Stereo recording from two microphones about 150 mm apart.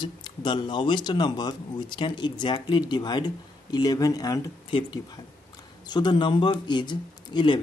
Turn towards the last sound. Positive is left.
turn(degrees=30)  # may be behind; listen again after turning